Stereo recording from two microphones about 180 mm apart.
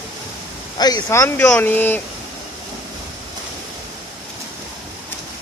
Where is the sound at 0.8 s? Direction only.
20° left (ahead or behind).